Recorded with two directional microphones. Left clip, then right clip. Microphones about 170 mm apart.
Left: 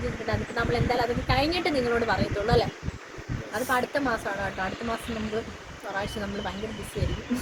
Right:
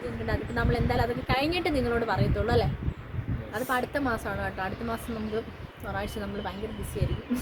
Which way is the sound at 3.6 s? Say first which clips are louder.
Left 3 dB; 25° right (ahead or behind).